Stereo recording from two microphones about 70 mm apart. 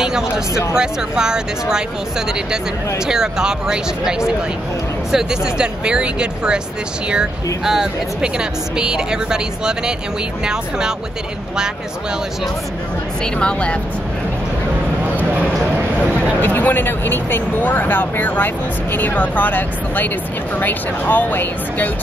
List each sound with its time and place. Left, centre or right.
0.7 s speech: centre
7.6 s speech: centre
13.2 s speech: centre
16.3 s speech: left